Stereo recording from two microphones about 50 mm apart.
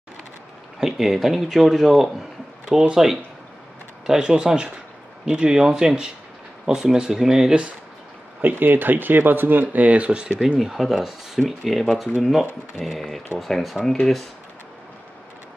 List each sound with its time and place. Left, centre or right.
0.7 s speech: centre
8.4 s speech: right
10.6 s speech: centre